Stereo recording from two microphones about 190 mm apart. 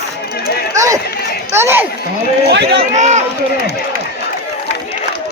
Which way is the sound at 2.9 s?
40° right (ahead or behind).